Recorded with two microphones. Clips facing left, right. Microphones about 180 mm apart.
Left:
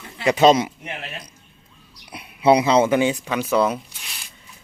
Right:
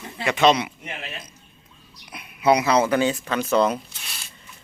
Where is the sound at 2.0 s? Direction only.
30° left (ahead or behind); by 3.8 s 5° left (ahead or behind).